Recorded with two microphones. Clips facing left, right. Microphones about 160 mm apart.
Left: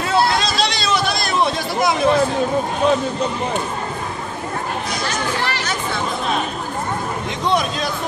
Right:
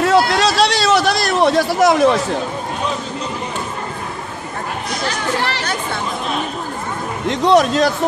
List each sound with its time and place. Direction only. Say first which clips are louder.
0.0 s a sound: right 4 dB; 70° right (ahead or behind)
5.4 s speech: right 2 dB; 60° right (ahead or behind)
7.2 s speech: right 8 dB; 75° right (ahead or behind)